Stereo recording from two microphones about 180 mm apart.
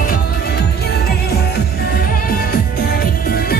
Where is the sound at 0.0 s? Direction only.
55° left (ahead or behind).